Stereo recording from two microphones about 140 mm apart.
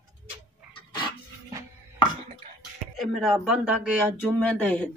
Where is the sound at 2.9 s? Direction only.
Centre (ahead or behind).